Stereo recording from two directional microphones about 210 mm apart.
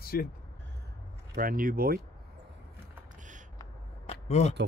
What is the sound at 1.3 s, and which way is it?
Speech, 45° right (ahead or behind).